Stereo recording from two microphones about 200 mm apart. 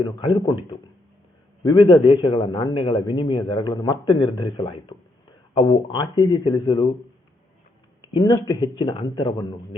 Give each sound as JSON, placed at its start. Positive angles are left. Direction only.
{"t": 0.0, "sound": "a man's voice", "side_deg": 25}
{"t": 1.6, "sound": "a man's voice", "side_deg": 20}
{"t": 8.0, "sound": "a man's voice", "side_deg": 20}